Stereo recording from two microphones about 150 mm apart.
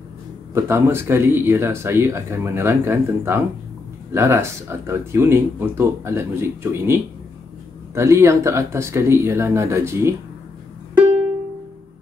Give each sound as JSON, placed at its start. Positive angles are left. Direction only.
{"t": 0.6, "sound": "speech", "side_deg": -15}